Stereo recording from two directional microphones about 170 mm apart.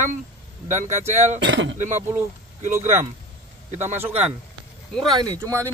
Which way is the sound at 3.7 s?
40° right (ahead or behind).